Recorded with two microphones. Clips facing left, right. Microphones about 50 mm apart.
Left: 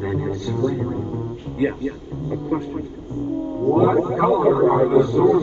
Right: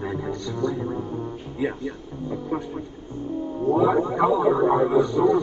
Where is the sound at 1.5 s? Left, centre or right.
Left.